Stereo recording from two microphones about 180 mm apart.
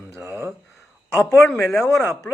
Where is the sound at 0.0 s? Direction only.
15° left (ahead or behind).